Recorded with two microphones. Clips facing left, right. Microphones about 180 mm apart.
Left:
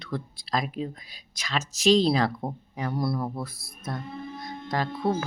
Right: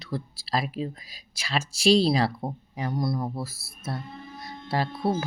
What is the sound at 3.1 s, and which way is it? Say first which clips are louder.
Speech: even; 15° right (ahead or behind).